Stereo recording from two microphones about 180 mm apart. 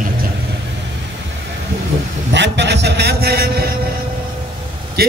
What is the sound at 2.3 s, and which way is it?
A man's voice, 80° right.